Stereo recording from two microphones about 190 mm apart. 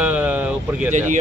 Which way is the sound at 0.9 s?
40° right (ahead or behind).